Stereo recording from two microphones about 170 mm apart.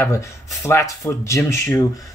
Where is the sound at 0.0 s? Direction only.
15° left (ahead or behind).